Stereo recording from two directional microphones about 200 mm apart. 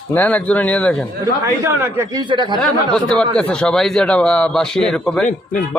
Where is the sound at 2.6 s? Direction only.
5° left (ahead or behind).